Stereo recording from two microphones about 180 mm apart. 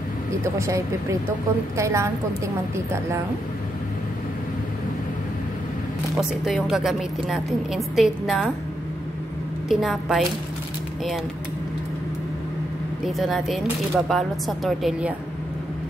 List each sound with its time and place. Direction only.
0.6 s a woman's voice: 15° right (ahead or behind)
6.4 s speech: centre (ahead or behind)
9.7 s speech: centre (ahead or behind)
13.0 s speech: centre (ahead or behind)